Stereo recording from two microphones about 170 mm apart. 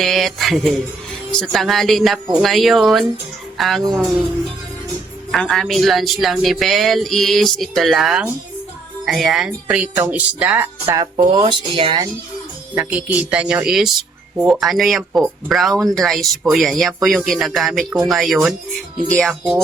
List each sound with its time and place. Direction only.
0.0 s speech: centre (ahead or behind)
5.3 s speech: centre (ahead or behind)
10.9 s speech: 25° right (ahead or behind)
12.7 s speech: 10° right (ahead or behind)